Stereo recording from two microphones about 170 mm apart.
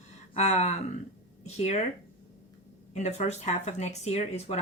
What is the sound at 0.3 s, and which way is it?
Speech, 40° left (ahead or behind).